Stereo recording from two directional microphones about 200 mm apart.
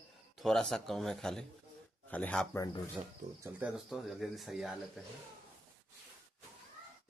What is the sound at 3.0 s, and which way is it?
Speech, 20° right (ahead or behind).